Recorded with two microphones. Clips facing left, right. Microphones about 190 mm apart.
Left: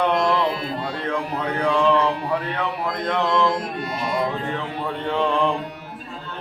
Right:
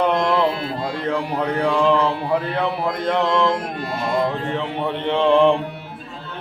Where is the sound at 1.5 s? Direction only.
30° right (ahead or behind).